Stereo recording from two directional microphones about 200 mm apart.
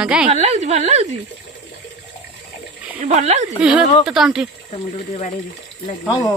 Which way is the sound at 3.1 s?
35° right (ahead or behind).